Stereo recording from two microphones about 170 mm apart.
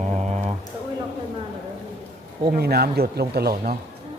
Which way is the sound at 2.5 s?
65° right (ahead or behind).